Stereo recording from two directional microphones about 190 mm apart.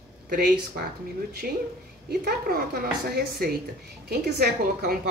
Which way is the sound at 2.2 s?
55° right (ahead or behind).